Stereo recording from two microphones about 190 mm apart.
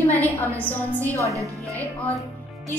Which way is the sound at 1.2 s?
15° right (ahead or behind).